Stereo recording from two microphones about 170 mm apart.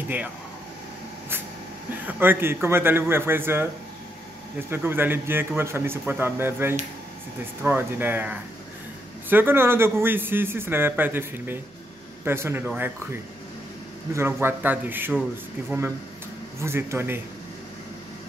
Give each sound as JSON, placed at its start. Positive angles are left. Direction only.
{"t": 2.0, "sound": "a man's voice", "side_deg": -10}
{"t": 4.6, "sound": "a man's voice", "side_deg": -15}
{"t": 16.6, "sound": "a man's voice", "side_deg": -15}